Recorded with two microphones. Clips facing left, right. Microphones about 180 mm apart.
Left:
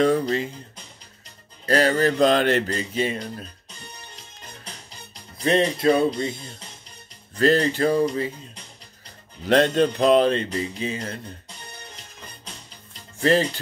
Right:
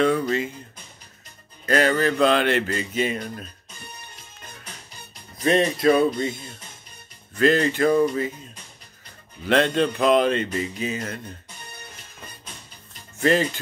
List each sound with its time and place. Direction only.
0.0 s speech: 35° left (ahead or behind)
1.7 s speech: 35° left (ahead or behind)
5.4 s speech: 25° left (ahead or behind)
7.3 s speech: 35° left (ahead or behind)
9.5 s speech: 40° left (ahead or behind)
13.2 s speech: 35° left (ahead or behind)